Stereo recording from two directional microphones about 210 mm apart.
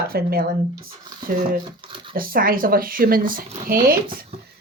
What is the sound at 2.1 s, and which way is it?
Speech, 45° right (ahead or behind).